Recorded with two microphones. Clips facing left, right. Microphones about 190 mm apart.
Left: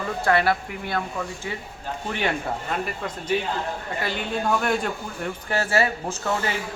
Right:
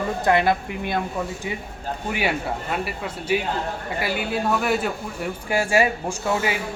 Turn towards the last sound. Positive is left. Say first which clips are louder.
# right 3 dB
turn(degrees=-15)  # may be behind; listen again after turning